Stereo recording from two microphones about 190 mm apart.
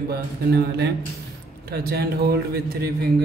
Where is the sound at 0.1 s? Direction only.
60° right (ahead or behind).